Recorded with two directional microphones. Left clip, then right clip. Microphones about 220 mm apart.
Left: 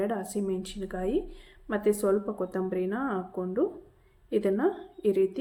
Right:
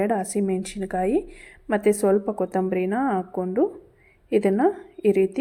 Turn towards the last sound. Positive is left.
turn(degrees=-35)  # may be behind; listen again after turning